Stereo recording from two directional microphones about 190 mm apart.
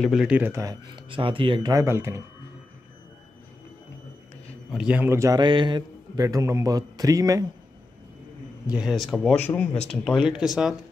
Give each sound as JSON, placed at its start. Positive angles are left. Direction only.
{"t": 0.0, "sound": "speech", "side_deg": 0}
{"t": 4.6, "sound": "a man's voice", "side_deg": -5}
{"t": 8.7, "sound": "speech", "side_deg": 0}